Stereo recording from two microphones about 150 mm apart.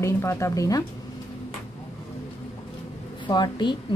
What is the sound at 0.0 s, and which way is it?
Speech, 20° left (ahead or behind).